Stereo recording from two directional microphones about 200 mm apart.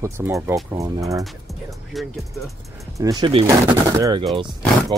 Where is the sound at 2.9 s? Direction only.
20° right (ahead or behind).